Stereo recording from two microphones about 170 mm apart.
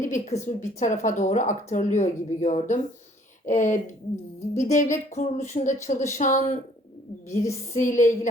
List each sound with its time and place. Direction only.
0.0 s speech: 50° left (ahead or behind)
7.7 s speech: 45° left (ahead or behind)